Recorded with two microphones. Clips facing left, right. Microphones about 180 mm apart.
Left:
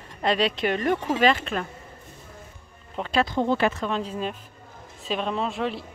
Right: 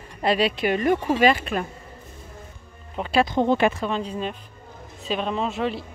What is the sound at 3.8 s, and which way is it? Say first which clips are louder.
Speech: right 1 dB; centre (ahead or behind).